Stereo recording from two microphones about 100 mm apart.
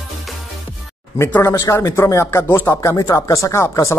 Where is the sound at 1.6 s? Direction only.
35° left (ahead or behind).